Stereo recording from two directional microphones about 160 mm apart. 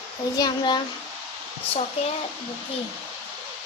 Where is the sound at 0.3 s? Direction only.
25° left (ahead or behind).